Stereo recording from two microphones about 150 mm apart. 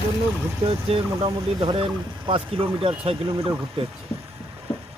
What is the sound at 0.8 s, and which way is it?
Speech, 40° right (ahead or behind).